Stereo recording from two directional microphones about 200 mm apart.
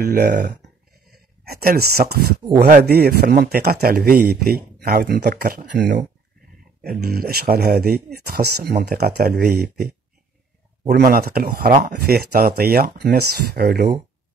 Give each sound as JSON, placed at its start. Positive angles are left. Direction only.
{"t": 0.0, "sound": "a man's voice", "side_deg": -55}
{"t": 1.5, "sound": "a man's voice", "side_deg": -50}
{"t": 10.9, "sound": "a man's voice", "side_deg": -50}